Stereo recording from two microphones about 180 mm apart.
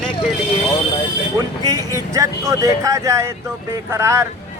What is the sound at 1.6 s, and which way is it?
Speech, 20° right (ahead or behind).